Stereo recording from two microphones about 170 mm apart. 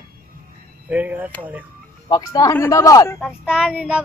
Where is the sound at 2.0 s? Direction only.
20° left (ahead or behind).